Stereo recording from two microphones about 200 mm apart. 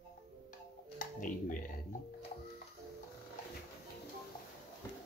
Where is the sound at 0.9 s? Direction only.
40° left (ahead or behind).